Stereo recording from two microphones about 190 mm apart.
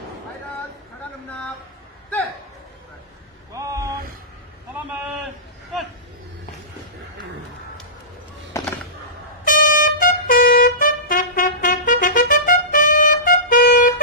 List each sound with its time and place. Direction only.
3.5 s boat: 15° right (ahead or behind)
8.5 s a sound: 15° left (ahead or behind)
9.5 s trumpet: 45° left (ahead or behind)